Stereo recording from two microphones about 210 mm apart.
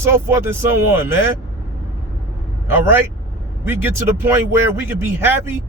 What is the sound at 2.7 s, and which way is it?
A man's voice, 10° right (ahead or behind).